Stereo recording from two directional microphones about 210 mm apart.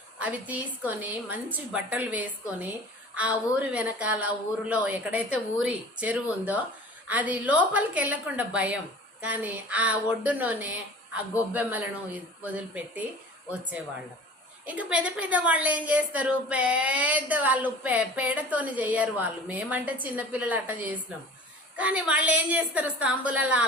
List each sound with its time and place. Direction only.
0.2 s a woman's voice: 5° right (ahead or behind)